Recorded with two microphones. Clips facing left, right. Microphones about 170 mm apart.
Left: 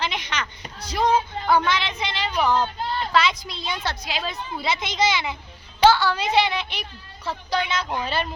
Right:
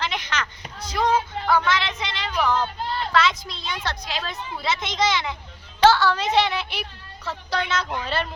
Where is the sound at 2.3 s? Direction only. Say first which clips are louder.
Left 1 dB; 20° left (ahead or behind).